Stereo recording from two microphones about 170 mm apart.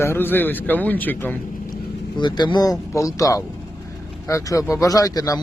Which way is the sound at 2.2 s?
25° left (ahead or behind).